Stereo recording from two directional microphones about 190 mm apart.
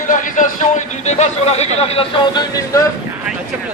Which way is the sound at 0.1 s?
45° left (ahead or behind).